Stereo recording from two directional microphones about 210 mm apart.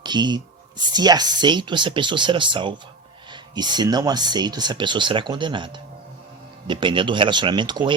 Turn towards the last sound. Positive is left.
turn(degrees=-20)  # may be behind; listen again after turning